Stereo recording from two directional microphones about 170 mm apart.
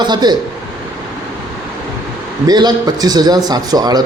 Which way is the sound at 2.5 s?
25° right (ahead or behind).